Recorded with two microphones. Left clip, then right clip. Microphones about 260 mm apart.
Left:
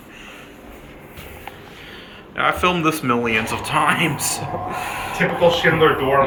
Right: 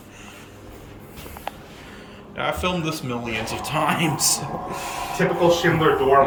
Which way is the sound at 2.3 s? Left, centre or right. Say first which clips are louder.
Left 6 dB; centre.